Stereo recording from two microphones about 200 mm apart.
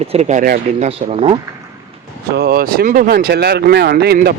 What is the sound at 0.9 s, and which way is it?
Speech, 30° right (ahead or behind).